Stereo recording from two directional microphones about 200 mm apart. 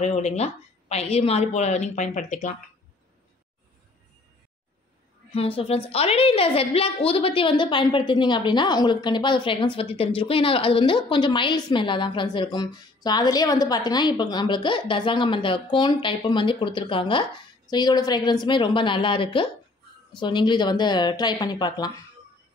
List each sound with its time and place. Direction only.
0.0 s a woman's voice: 35° left (ahead or behind)
5.3 s a woman's voice: 30° left (ahead or behind)